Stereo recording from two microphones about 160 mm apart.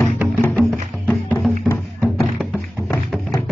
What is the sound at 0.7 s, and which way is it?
Music, centre (ahead or behind).